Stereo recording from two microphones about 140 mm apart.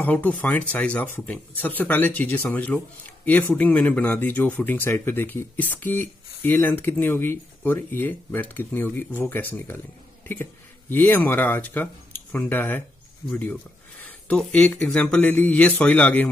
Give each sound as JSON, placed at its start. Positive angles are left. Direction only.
{"t": 0.0, "sound": "speech", "side_deg": 10}